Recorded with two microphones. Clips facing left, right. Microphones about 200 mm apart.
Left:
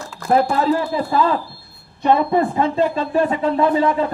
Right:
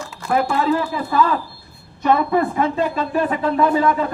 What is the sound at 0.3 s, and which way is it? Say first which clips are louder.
A man's voice: left 2 dB; 35° left (ahead or behind).